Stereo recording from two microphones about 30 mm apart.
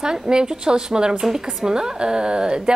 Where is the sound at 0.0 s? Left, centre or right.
Right.